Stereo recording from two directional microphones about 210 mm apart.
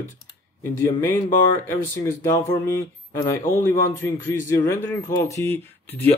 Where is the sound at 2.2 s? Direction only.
15° left (ahead or behind).